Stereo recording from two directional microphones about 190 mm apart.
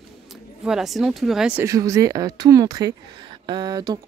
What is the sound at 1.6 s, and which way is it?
Speech, 15° right (ahead or behind).